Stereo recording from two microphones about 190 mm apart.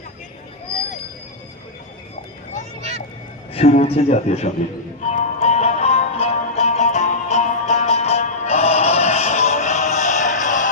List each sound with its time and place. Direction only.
3.5 s a man's voice: 35° left (ahead or behind)
5.0 s music: 35° left (ahead or behind)